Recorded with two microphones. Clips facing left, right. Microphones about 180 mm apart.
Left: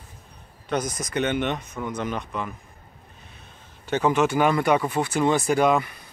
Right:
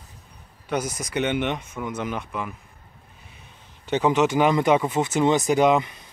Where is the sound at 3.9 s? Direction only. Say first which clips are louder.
Right 1 dB; 15° right (ahead or behind).